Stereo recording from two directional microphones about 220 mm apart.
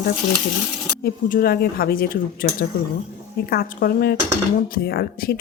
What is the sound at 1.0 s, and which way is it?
Speech, 40° left (ahead or behind).